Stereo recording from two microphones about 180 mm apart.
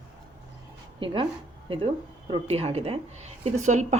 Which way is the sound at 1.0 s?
30° right (ahead or behind).